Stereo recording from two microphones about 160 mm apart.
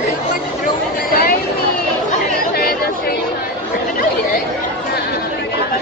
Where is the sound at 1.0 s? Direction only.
70° left (ahead or behind).